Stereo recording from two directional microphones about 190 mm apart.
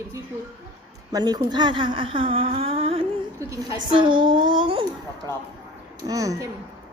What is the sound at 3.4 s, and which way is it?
A woman's voice, 15° right (ahead or behind).